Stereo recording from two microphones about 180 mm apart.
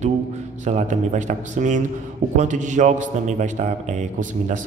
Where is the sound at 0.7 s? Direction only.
40° right (ahead or behind).